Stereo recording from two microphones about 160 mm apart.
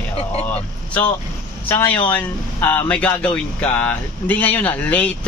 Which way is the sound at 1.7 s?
15° left (ahead or behind).